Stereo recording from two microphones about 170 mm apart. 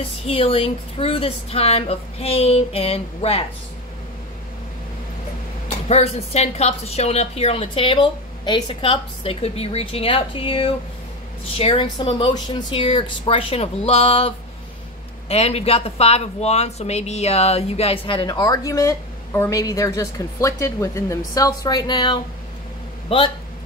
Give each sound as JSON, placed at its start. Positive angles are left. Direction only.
{"t": 0.0, "sound": "speech", "side_deg": 35}
{"t": 5.7, "sound": "a woman's voice", "side_deg": 40}